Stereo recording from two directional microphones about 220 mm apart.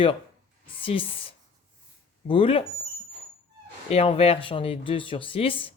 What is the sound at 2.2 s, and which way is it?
Speech, 25° left (ahead or behind).